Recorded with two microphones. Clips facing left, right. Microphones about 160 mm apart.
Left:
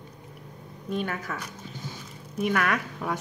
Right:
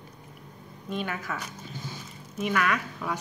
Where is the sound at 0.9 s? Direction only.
40° left (ahead or behind).